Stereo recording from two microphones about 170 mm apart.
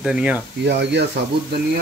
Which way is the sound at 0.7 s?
90° right.